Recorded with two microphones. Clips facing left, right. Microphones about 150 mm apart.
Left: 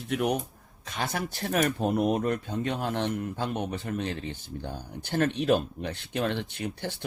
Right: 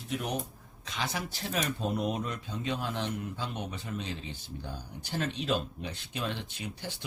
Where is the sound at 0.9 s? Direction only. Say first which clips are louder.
Left 4 dB; 50° left (ahead or behind).